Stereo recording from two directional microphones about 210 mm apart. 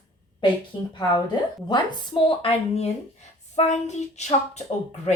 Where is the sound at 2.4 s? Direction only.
30° left (ahead or behind).